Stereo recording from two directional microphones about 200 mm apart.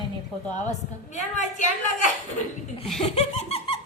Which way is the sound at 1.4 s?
35° left (ahead or behind).